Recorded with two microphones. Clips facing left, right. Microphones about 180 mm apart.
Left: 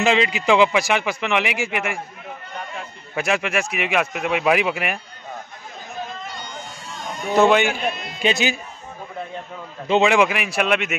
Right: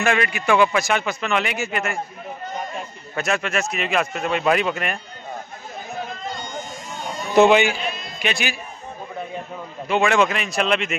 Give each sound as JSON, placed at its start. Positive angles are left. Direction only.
{"t": 0.0, "sound": "speech", "side_deg": 20}
{"t": 3.2, "sound": "speech", "side_deg": 10}
{"t": 7.3, "sound": "speech", "side_deg": -10}
{"t": 7.8, "sound": "a sound", "side_deg": 65}
{"t": 8.2, "sound": "speech", "side_deg": 25}
{"t": 9.8, "sound": "speech", "side_deg": 20}